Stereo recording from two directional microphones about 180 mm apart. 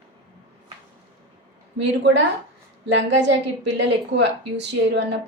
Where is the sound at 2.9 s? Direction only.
75° right (ahead or behind).